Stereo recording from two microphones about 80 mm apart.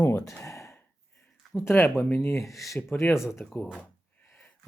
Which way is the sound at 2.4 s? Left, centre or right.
Centre.